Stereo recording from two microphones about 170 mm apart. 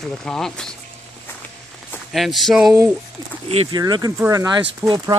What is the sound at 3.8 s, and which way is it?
Speech, 20° right (ahead or behind).